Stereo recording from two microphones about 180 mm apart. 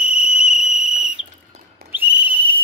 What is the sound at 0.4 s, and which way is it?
Cricket, 5° right (ahead or behind).